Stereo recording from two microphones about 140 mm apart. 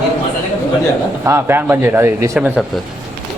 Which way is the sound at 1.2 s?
20° right (ahead or behind).